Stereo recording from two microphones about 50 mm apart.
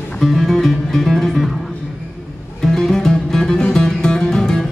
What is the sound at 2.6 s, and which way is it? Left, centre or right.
Music, centre.